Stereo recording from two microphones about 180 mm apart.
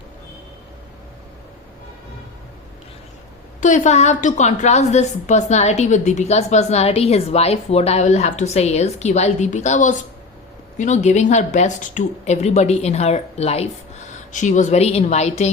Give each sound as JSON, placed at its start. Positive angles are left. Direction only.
{"t": 3.6, "sound": "a woman's voice", "side_deg": 45}